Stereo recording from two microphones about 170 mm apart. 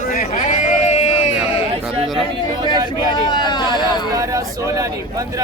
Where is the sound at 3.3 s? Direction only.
25° left (ahead or behind).